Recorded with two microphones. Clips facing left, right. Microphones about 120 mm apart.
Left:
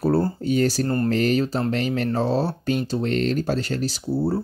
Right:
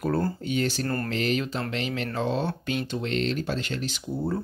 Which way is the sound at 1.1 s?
40° left (ahead or behind).